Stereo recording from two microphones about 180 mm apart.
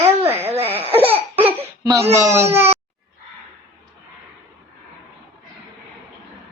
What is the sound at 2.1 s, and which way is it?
Speech, 15° right (ahead or behind).